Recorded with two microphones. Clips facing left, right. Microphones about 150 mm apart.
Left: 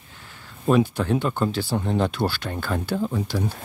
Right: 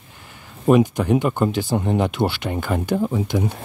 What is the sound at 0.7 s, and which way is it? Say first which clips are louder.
Speech: right 4 dB; 15° right (ahead or behind).